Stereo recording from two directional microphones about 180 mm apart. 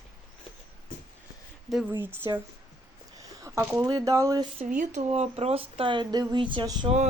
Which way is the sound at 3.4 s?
15° right (ahead or behind).